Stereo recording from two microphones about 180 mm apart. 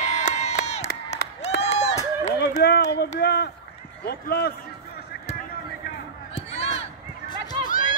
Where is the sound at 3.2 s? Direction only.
65° left (ahead or behind).